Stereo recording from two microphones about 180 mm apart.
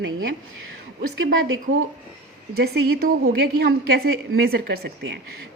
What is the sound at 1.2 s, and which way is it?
Speech, 90° right.